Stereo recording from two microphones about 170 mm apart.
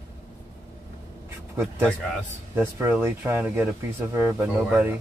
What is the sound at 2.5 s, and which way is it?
Speech, 10° right (ahead or behind).